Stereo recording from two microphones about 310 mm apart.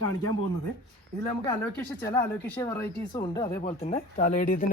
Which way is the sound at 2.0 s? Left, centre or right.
Centre.